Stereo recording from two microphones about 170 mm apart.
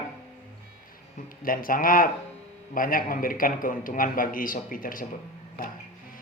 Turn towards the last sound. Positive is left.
turn(degrees=55)  # may be behind; listen again after turning